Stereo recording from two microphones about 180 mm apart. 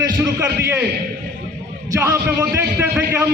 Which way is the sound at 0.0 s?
15° right (ahead or behind).